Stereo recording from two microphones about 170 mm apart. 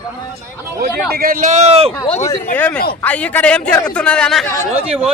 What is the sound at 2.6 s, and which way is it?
A man's voice, 5° left (ahead or behind).